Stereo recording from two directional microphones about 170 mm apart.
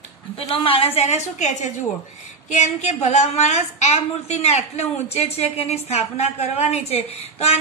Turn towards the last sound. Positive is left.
turn(degrees=35)  # may be behind; listen again after turning